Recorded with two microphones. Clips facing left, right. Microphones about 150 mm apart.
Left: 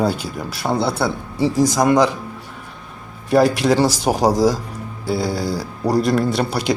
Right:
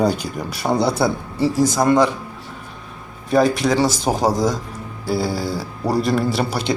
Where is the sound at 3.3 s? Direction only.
5° left (ahead or behind).